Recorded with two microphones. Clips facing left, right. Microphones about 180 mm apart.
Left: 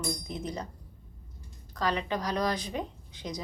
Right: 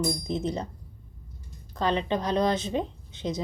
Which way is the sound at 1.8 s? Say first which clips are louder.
Right 4 dB; 25° right (ahead or behind).